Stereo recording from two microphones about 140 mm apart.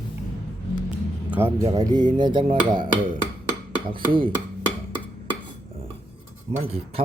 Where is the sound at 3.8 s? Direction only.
35° right (ahead or behind).